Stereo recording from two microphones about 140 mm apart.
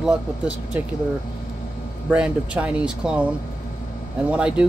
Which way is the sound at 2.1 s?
10° right (ahead or behind).